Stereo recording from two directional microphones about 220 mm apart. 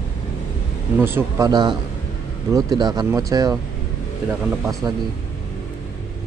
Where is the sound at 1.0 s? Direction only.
10° right (ahead or behind).